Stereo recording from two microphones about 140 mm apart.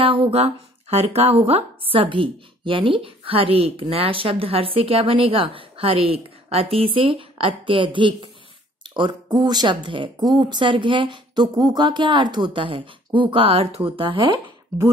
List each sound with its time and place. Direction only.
0.0 s speech: 40° right (ahead or behind)